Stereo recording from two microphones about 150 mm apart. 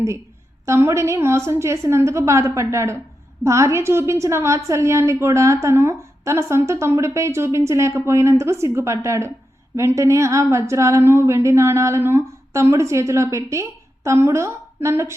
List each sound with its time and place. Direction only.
0.6 s a woman's voice: 20° right (ahead or behind)